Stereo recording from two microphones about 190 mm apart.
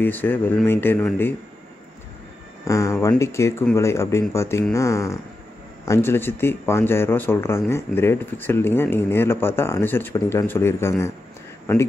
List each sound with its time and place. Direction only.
0.0 s speech: 10° left (ahead or behind)
2.6 s speech: 15° left (ahead or behind)